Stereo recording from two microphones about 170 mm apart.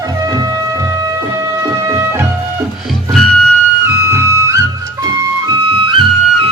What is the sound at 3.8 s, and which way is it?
Music, 15° right (ahead or behind).